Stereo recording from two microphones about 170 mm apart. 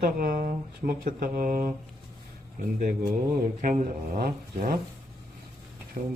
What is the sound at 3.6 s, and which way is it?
Speech, 45° right (ahead or behind).